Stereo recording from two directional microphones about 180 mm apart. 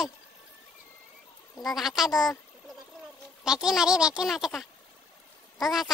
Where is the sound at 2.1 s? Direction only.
20° left (ahead or behind).